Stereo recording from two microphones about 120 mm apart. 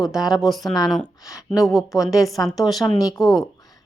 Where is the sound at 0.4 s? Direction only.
Centre (ahead or behind).